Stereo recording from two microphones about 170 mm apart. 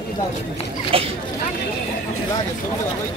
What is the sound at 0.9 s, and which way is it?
Speech, 35° right (ahead or behind).